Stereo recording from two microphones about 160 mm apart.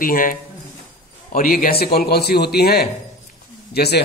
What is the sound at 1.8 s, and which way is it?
A man's voice, 75° left (ahead or behind).